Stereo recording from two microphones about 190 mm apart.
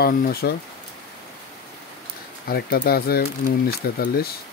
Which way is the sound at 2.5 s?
50° left (ahead or behind).